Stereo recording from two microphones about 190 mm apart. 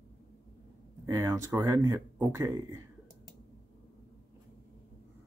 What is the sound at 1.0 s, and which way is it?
Speech, 15° right (ahead or behind).